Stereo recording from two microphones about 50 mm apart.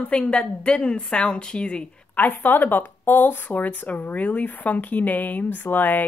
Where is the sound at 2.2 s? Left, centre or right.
Left.